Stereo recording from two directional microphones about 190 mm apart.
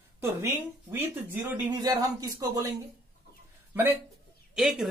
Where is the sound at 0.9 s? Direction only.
10° right (ahead or behind).